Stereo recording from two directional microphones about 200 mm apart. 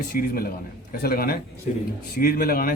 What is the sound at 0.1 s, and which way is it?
A man's voice, 50° left (ahead or behind).